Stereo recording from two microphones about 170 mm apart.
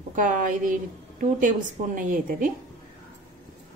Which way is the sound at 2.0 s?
50° right (ahead or behind).